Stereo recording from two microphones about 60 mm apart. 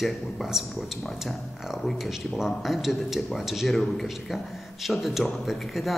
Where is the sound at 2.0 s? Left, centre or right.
Centre.